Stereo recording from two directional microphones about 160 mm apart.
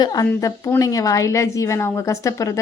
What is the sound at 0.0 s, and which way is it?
A woman's voice, 25° left (ahead or behind).